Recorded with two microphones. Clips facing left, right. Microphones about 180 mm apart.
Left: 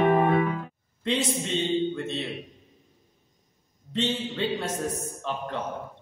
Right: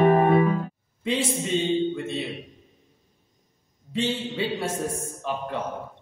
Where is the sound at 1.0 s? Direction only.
5° right (ahead or behind).